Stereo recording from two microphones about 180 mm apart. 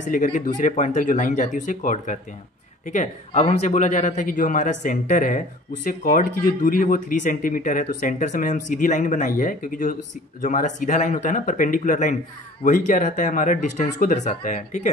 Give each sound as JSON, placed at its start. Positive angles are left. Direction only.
{"t": 0.0, "sound": "speech", "side_deg": 45}